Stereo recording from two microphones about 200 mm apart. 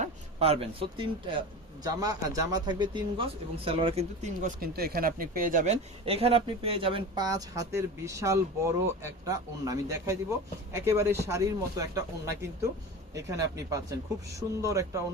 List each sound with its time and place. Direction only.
0.0 s speech: 30° right (ahead or behind)